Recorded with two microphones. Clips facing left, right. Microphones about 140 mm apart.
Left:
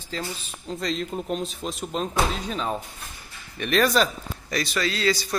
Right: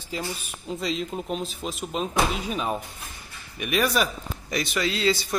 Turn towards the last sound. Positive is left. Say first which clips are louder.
# even
turn(degrees=-20)  # may be behind; listen again after turning